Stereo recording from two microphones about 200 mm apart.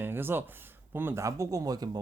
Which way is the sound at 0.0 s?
10° right (ahead or behind).